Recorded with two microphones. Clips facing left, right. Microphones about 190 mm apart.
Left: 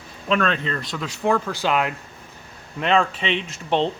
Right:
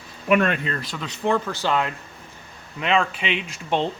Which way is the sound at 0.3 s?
15° right (ahead or behind).